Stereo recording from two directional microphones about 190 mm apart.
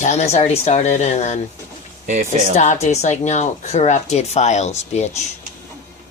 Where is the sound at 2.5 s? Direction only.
40° left (ahead or behind).